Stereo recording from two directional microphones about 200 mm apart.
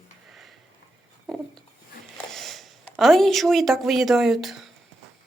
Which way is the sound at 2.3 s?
Centre (ahead or behind).